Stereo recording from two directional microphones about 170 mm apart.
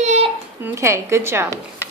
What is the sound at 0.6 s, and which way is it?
Speech, 15° right (ahead or behind).